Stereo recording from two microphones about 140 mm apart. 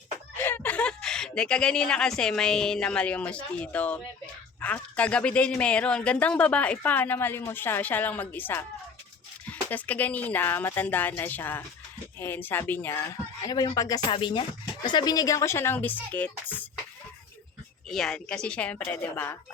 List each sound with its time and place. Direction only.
0.3 s speech: 15° left (ahead or behind)
13.4 s a woman's voice: 30° left (ahead or behind)
14.1 s a woman's voice: 35° left (ahead or behind); by 16.6 s 10° left (ahead or behind)
17.8 s speech: 5° left (ahead or behind)